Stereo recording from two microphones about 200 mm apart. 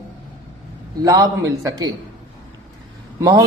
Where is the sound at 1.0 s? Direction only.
15° right (ahead or behind).